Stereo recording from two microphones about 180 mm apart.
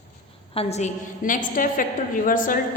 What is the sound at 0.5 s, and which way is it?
A woman's voice, 40° left (ahead or behind).